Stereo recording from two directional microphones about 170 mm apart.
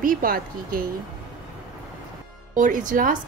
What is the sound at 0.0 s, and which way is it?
Speech, 55° right (ahead or behind).